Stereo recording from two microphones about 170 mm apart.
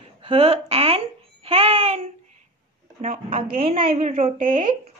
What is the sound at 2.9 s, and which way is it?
Speech, 35° right (ahead or behind).